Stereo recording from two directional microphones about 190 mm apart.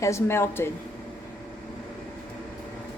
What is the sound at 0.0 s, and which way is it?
Speech, 15° left (ahead or behind).